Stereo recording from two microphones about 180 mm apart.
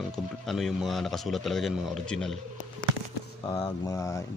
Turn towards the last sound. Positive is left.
turn(degrees=15)  # may be behind; listen again after turning